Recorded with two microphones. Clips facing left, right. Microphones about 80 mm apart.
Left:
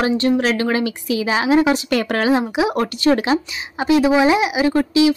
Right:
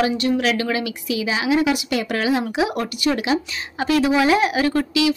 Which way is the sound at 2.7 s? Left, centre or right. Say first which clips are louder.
Left 5 dB; left.